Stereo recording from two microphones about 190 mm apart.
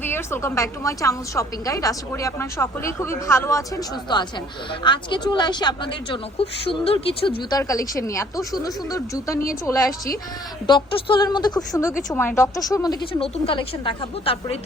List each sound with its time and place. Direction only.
0.0 s a woman's voice: 10° left (ahead or behind); by 7.3 s 30° left (ahead or behind)
7.5 s a woman's voice: 15° left (ahead or behind)
10.7 s speech: 25° left (ahead or behind)